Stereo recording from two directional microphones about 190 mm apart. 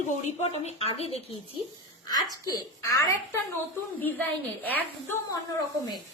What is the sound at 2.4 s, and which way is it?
A woman's voice, 20° left (ahead or behind).